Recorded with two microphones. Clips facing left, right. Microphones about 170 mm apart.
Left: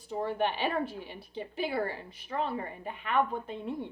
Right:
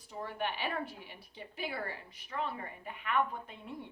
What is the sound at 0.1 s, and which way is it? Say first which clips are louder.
A woman's voice: left 8 dB; 30° left (ahead or behind).